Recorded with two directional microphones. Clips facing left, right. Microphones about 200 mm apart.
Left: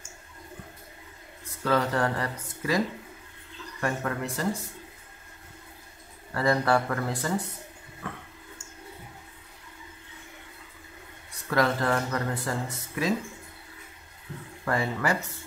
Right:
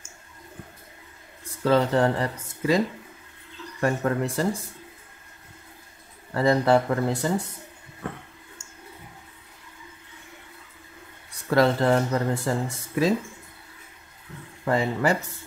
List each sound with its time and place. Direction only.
1.6 s speech: 25° right (ahead or behind)
3.8 s speech: 30° right (ahead or behind)
6.3 s speech: 25° right (ahead or behind)
11.5 s speech: 30° right (ahead or behind)
14.6 s speech: 20° right (ahead or behind)